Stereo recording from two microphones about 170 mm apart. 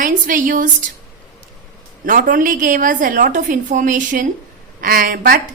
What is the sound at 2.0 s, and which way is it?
A woman's voice, 50° right (ahead or behind).